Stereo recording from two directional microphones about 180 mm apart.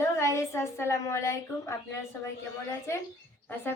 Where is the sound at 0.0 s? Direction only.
15° left (ahead or behind).